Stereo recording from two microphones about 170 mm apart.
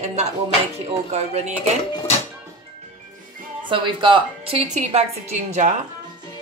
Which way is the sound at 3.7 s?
30° right (ahead or behind).